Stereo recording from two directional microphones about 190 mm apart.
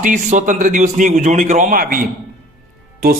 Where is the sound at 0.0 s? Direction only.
40° right (ahead or behind).